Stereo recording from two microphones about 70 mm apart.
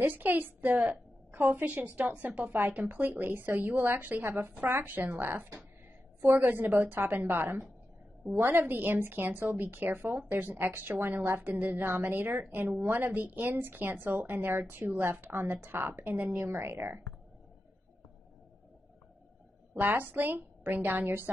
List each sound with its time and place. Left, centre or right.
0.0 s a woman's voice: right
16.4 s speech: right
19.7 s speech: right